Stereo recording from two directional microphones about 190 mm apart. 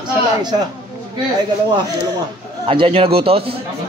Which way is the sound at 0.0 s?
20° right (ahead or behind).